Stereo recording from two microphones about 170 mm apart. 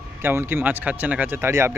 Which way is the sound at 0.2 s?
15° right (ahead or behind).